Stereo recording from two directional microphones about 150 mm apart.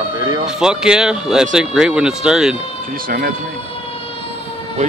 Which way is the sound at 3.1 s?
80° right.